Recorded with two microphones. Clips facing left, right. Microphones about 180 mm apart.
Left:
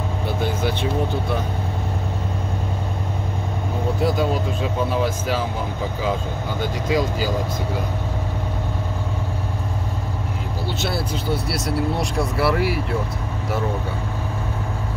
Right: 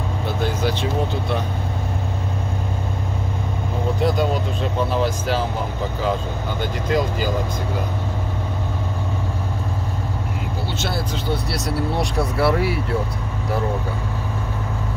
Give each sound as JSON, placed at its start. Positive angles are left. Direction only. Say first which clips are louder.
{"t": 4.0, "sound": "speech", "louder": "even", "side_deg": 5}
{"t": 6.9, "sound": "speech", "louder": "even", "side_deg": 0}
{"t": 12.4, "sound": "speech", "louder": "right 1 dB", "side_deg": 0}